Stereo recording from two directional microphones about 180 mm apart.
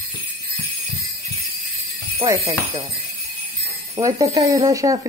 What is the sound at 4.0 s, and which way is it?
Speech, 20° right (ahead or behind).